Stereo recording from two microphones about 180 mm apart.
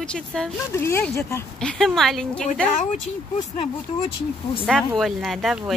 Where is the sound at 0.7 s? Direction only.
15° left (ahead or behind).